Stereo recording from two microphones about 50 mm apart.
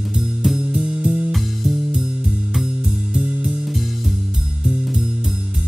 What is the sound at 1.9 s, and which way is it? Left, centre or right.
Music, centre.